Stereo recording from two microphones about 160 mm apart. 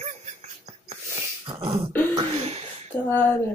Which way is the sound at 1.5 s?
30° right (ahead or behind).